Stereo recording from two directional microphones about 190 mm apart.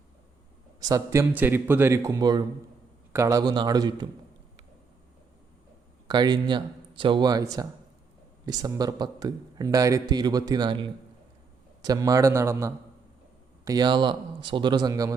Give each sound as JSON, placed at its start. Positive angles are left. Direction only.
{"t": 0.8, "sound": "a man's voice", "side_deg": -20}
{"t": 6.1, "sound": "a man's voice", "side_deg": -20}